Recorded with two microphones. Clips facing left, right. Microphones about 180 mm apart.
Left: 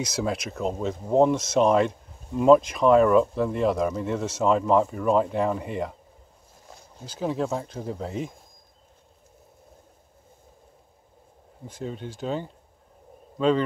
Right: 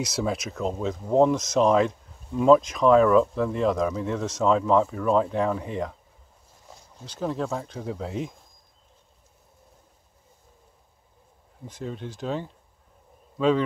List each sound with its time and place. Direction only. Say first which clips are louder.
0.0 s speech: even; centre (ahead or behind)
7.1 s speech: left 1 dB; 5° left (ahead or behind)
11.6 s speech: even; centre (ahead or behind)